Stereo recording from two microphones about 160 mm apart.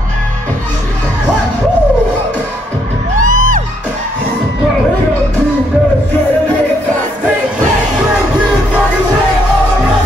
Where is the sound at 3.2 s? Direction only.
55° right (ahead or behind).